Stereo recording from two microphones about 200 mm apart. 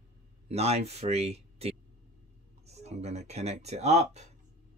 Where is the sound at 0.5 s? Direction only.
30° right (ahead or behind).